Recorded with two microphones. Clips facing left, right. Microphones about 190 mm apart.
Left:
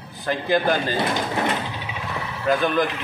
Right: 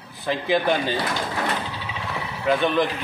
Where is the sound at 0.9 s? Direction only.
20° left (ahead or behind).